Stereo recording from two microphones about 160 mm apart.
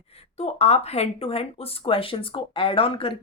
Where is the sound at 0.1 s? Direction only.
40° left (ahead or behind).